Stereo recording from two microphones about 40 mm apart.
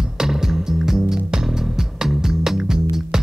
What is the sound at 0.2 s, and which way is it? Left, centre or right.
Music, centre.